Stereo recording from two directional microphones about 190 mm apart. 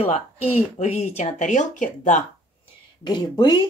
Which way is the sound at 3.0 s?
25° left (ahead or behind).